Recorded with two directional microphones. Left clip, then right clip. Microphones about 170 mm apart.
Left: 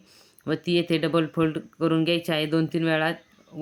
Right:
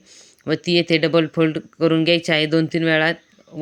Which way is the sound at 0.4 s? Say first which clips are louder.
Right 6 dB; 20° right (ahead or behind).